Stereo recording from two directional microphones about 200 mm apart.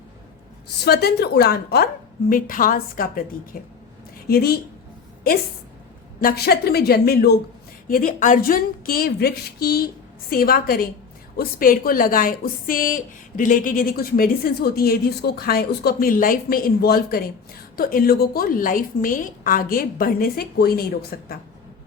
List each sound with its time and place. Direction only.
0.9 s speech: 50° left (ahead or behind)
6.2 s speech: 50° left (ahead or behind)